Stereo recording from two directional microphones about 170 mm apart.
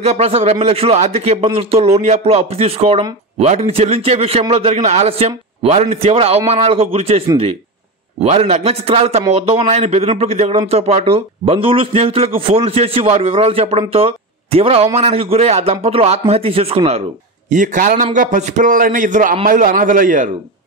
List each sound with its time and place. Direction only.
0.0 s speech: 40° right (ahead or behind)
8.2 s speech: 40° right (ahead or behind)
17.5 s a man's voice: 50° right (ahead or behind)